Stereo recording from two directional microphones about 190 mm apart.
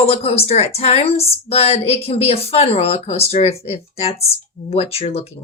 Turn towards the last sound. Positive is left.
turn(degrees=30)  # may be behind; listen again after turning